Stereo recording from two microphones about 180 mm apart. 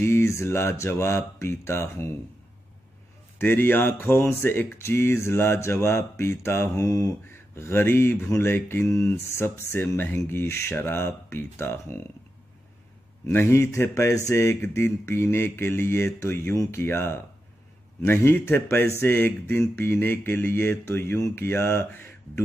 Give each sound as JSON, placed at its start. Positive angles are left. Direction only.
{"t": 0.0, "sound": "speech", "side_deg": 15}
{"t": 3.3, "sound": "speech", "side_deg": 10}
{"t": 13.3, "sound": "speech", "side_deg": 15}